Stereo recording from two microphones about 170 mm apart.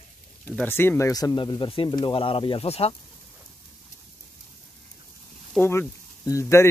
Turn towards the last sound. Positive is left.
turn(degrees=15)  # may be behind; listen again after turning